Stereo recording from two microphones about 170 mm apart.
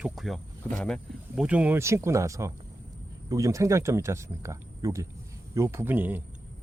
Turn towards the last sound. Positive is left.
turn(degrees=-10)  # may be behind; listen again after turning